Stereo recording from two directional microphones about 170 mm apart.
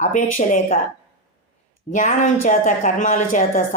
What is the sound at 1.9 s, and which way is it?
A woman's voice, 50° left (ahead or behind).